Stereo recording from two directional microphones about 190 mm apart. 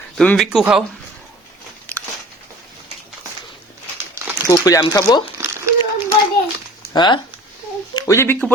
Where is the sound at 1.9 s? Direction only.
5° left (ahead or behind).